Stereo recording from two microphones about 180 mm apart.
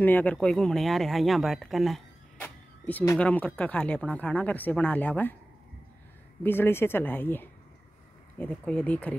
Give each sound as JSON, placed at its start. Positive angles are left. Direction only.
{"t": 0.0, "sound": "speech", "side_deg": 10}
{"t": 6.4, "sound": "speech", "side_deg": 10}